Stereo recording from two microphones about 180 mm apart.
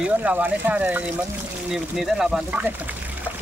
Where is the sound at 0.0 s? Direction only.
10° right (ahead or behind).